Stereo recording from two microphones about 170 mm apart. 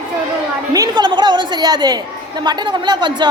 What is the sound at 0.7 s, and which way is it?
A woman's voice, 25° right (ahead or behind).